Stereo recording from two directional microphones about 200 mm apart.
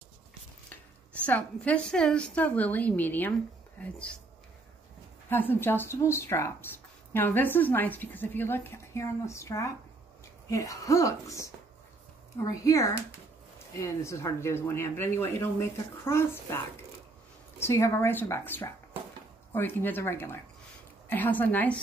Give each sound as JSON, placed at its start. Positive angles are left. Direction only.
{"t": 1.2, "sound": "speech", "side_deg": 5}
{"t": 5.3, "sound": "speech", "side_deg": 10}